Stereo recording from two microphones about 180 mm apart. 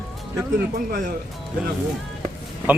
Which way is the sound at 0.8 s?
50° right (ahead or behind).